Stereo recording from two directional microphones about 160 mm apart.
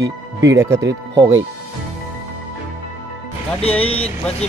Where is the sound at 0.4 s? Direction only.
15° right (ahead or behind).